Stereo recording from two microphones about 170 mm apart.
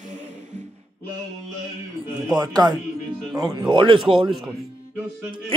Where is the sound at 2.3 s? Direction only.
25° right (ahead or behind).